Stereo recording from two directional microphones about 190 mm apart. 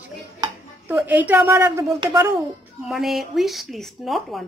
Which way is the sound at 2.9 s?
Centre (ahead or behind).